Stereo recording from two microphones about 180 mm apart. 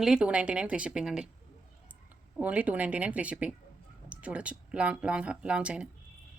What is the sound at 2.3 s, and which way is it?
Speech, 5° right (ahead or behind).